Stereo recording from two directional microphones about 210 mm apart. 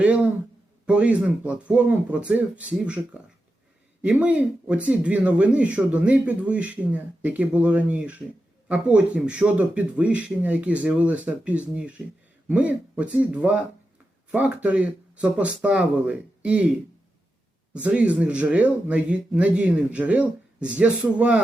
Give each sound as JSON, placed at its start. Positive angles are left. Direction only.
{"t": 0.0, "sound": "a man's voice", "side_deg": -5}
{"t": 4.0, "sound": "a man's voice", "side_deg": -5}
{"t": 17.8, "sound": "a man's voice", "side_deg": -5}